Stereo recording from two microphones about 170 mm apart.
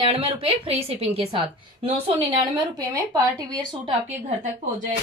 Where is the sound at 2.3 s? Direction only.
20° right (ahead or behind).